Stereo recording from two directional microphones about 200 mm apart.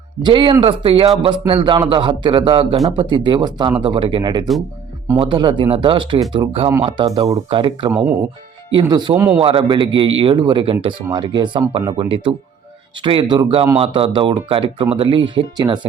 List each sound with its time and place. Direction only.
0.2 s speech: 25° right (ahead or behind)
9.4 s speech: 25° right (ahead or behind)